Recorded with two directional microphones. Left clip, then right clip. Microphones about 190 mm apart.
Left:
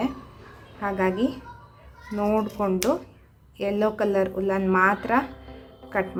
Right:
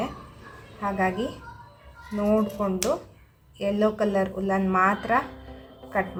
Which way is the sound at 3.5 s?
30° left (ahead or behind).